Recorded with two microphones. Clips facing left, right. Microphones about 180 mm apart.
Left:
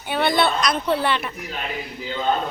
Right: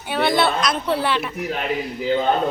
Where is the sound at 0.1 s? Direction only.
Centre (ahead or behind).